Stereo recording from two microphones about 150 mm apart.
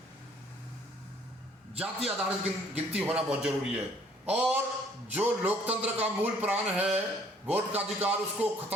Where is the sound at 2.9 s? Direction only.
5° right (ahead or behind).